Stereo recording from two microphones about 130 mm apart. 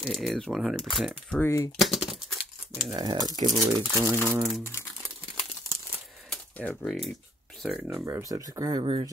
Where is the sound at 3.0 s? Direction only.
30° right (ahead or behind).